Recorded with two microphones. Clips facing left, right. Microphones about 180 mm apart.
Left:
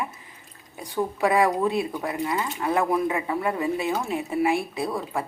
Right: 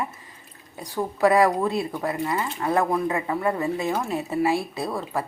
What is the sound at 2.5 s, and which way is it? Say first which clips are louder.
Speech: right 1 dB; 5° left (ahead or behind).